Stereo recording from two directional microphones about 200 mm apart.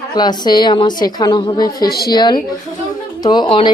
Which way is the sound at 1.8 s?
50° left (ahead or behind).